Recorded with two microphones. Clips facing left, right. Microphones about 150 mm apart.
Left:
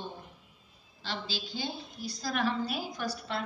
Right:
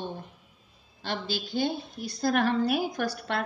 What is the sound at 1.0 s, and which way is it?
A woman's voice, 55° right (ahead or behind).